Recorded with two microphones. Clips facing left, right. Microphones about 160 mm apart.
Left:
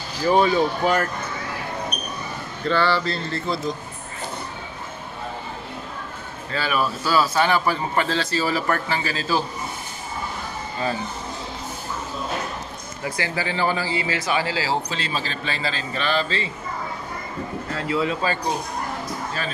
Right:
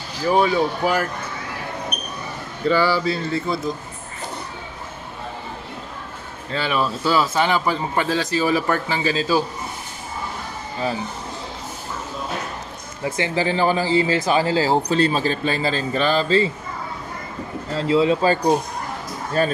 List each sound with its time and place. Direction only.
0.3 s a man's voice: 5° right (ahead or behind)
2.6 s a man's voice: 10° right (ahead or behind)
6.5 s a man's voice: 25° right (ahead or behind)
13.0 s speech: 25° right (ahead or behind)
13.9 s speech: 35° right (ahead or behind)
17.7 s speech: 30° right (ahead or behind)